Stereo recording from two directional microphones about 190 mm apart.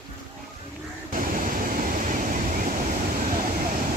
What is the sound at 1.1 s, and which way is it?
Waves, 45° right (ahead or behind).